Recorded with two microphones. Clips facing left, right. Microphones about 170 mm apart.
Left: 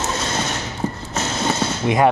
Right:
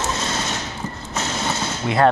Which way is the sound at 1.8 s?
15° left (ahead or behind).